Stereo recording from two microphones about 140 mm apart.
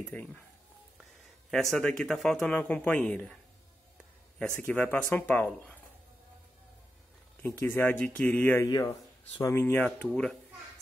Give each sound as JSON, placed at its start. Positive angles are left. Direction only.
{"t": 0.1, "sound": "speech", "side_deg": 10}
{"t": 1.5, "sound": "speech", "side_deg": 5}
{"t": 4.4, "sound": "speech", "side_deg": 10}
{"t": 7.4, "sound": "speech", "side_deg": 15}
{"t": 8.6, "sound": "speech", "side_deg": 25}
{"t": 9.4, "sound": "speech", "side_deg": 15}
{"t": 9.9, "sound": "speech", "side_deg": 5}